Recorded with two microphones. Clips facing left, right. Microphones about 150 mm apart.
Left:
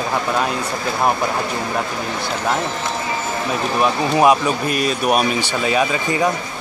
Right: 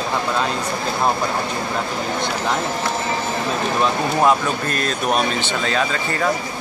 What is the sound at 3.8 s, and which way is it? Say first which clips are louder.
Speech: left 3 dB; 15° left (ahead or behind).